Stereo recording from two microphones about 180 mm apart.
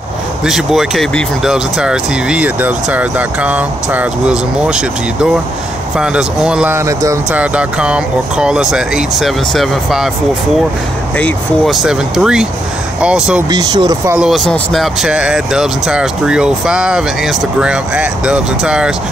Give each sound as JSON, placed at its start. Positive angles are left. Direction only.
{"t": 0.5, "sound": "speech", "side_deg": 0}
{"t": 7.2, "sound": "speech", "side_deg": -5}
{"t": 11.1, "sound": "speech", "side_deg": 5}
{"t": 13.5, "sound": "speech", "side_deg": -20}
{"t": 14.1, "sound": "speech", "side_deg": -5}